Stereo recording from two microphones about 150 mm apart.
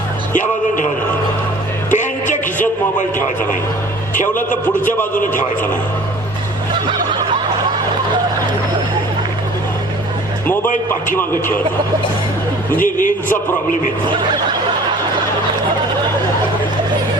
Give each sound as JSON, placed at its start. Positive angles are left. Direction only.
{"t": 0.3, "sound": "a man's voice", "side_deg": 55}
{"t": 1.9, "sound": "a sound", "side_deg": 55}
{"t": 4.1, "sound": "a man's voice", "side_deg": 60}
{"t": 11.1, "sound": "speech", "side_deg": 15}
{"t": 12.8, "sound": "a man's voice", "side_deg": 60}